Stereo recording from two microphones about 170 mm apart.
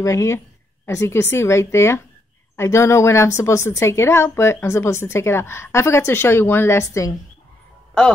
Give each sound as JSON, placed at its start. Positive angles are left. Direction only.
{"t": 0.0, "sound": "a woman's voice", "side_deg": 15}